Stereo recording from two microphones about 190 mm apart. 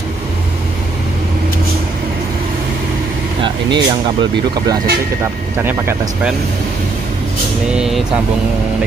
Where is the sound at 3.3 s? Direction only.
25° right (ahead or behind).